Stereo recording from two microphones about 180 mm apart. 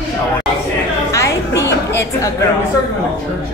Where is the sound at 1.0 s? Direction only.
15° left (ahead or behind).